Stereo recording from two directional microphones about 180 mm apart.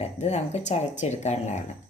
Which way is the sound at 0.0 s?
40° left (ahead or behind).